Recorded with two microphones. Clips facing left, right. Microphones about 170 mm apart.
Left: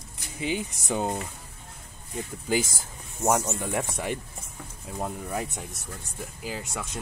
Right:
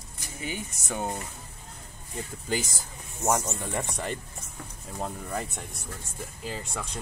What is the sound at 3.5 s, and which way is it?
Speech, 5° left (ahead or behind).